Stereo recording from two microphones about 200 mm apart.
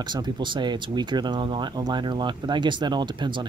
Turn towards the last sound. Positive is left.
turn(degrees=-25)  # may be behind; listen again after turning